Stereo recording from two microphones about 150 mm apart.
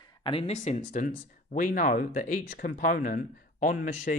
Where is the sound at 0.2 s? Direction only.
40° left (ahead or behind).